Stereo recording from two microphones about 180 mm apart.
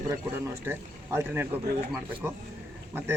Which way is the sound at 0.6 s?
10° right (ahead or behind).